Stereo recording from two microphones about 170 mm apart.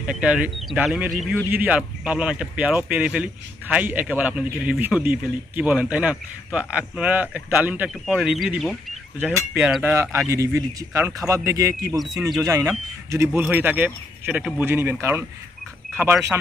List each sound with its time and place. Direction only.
0.0 s speech: 5° right (ahead or behind)
9.9 s speech: 15° right (ahead or behind)